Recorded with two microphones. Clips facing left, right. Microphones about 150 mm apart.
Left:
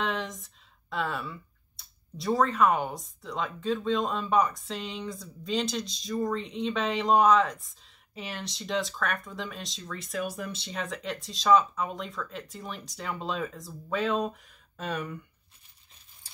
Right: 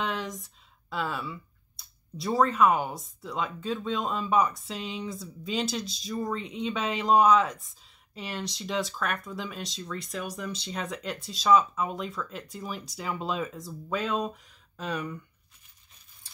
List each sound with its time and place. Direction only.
0.0 s speech: centre (ahead or behind)